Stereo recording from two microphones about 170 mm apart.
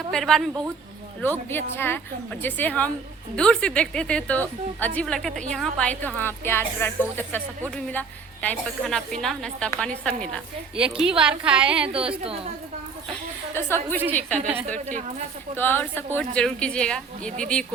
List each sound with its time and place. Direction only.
0.1 s a woman's voice: centre (ahead or behind)
1.2 s a woman's voice: 10° left (ahead or behind); by 11.9 s 5° right (ahead or behind)
11.9 s a woman's voice: 35° right (ahead or behind)
13.6 s a woman's voice: 15° left (ahead or behind)
15.5 s a woman's voice: 10° left (ahead or behind)